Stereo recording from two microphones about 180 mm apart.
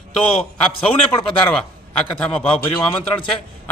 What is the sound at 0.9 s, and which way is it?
A man's voice, 10° left (ahead or behind).